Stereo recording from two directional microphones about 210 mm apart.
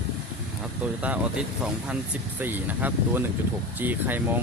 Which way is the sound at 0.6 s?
5° right (ahead or behind).